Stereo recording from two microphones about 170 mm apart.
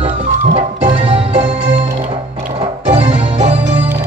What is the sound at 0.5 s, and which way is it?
Music, 40° right (ahead or behind).